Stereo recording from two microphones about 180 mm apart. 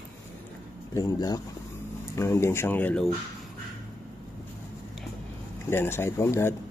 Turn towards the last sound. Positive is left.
turn(degrees=15)  # may be behind; listen again after turning